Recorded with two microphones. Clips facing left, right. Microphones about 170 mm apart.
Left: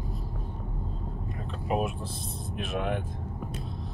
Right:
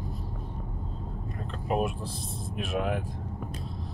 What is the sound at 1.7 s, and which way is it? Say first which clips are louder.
Speech: right 1 dB; centre (ahead or behind).